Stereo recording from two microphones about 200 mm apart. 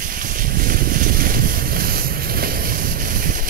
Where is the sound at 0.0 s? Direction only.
45° right (ahead or behind).